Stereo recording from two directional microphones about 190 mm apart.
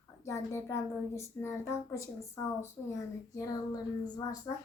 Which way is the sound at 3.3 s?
20° left (ahead or behind).